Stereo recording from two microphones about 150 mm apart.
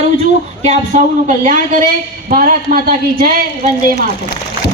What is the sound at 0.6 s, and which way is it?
Speech, 50° right (ahead or behind).